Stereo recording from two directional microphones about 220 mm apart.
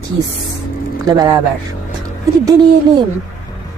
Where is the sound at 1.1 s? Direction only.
15° right (ahead or behind).